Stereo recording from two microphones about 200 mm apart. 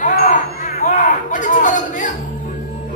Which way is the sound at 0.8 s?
40° left (ahead or behind).